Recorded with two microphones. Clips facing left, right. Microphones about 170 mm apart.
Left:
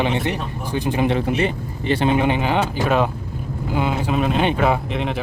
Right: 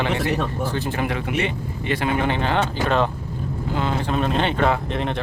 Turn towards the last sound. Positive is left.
turn(degrees=0)  # may be behind; listen again after turning